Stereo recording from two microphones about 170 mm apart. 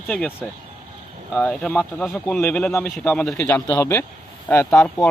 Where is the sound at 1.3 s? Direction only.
5° left (ahead or behind).